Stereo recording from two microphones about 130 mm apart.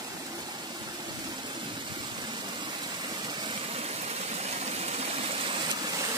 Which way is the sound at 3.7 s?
55° right (ahead or behind).